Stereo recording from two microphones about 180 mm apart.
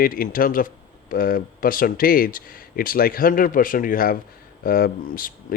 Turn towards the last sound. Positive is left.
turn(degrees=55)  # may be behind; listen again after turning